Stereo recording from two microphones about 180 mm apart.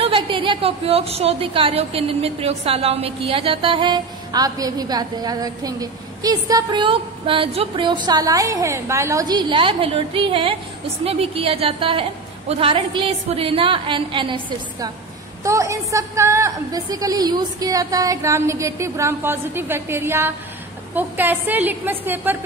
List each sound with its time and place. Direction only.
0.0 s a woman's voice: 30° right (ahead or behind)
15.4 s a woman's voice: 15° right (ahead or behind)